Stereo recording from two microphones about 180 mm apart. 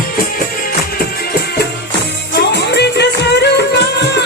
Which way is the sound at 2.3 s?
65° left (ahead or behind).